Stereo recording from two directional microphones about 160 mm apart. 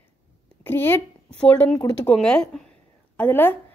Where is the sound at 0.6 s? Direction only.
15° left (ahead or behind).